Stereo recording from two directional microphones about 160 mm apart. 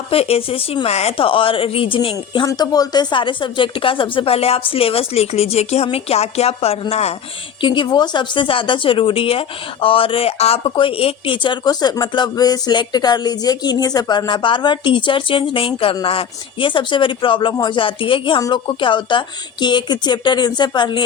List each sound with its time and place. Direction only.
0.1 s speech: 35° left (ahead or behind)
7.6 s speech: 30° left (ahead or behind)